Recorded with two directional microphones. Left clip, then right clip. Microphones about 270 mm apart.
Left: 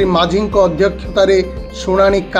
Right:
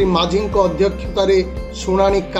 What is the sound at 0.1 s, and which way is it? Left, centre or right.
Speech, centre.